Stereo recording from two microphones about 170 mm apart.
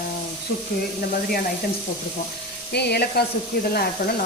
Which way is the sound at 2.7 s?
75° left (ahead or behind).